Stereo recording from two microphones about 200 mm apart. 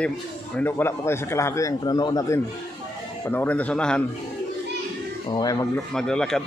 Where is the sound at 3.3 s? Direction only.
10° left (ahead or behind).